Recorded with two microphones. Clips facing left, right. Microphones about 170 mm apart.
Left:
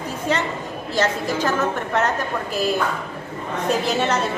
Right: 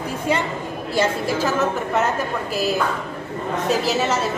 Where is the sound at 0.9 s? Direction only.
5° right (ahead or behind).